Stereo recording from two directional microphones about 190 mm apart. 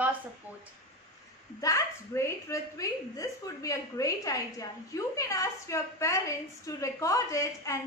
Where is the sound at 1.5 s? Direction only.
20° left (ahead or behind).